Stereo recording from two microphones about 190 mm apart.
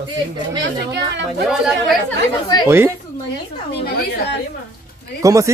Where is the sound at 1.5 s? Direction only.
Centre (ahead or behind).